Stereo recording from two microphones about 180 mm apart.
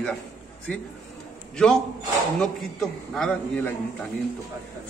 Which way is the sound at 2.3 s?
5° left (ahead or behind).